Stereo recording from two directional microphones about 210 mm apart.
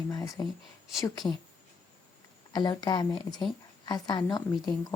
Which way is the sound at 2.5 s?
20° left (ahead or behind).